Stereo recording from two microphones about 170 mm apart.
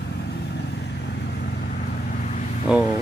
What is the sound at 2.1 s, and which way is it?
Vehicle, 45° left (ahead or behind).